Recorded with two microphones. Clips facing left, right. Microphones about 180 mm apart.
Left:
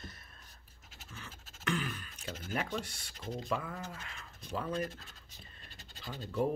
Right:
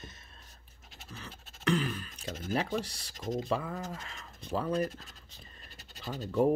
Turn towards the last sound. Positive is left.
turn(degrees=-40)  # may be behind; listen again after turning